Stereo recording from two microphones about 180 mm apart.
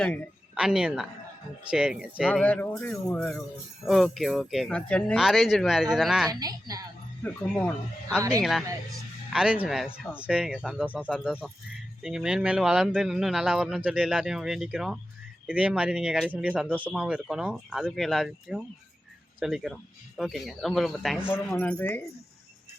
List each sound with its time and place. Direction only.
0.5 s a woman's voice: 5° right (ahead or behind)
2.4 s speech: 10° left (ahead or behind)
6.4 s a woman's voice: 20° right (ahead or behind)
7.2 s speech: 5° left (ahead or behind)
21.3 s speech: 10° left (ahead or behind)